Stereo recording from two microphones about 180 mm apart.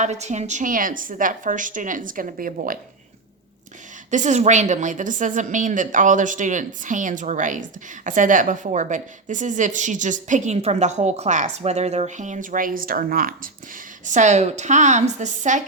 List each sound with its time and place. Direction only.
0.0 s a woman's voice: 40° right (ahead or behind)
4.1 s a woman's voice: 40° right (ahead or behind)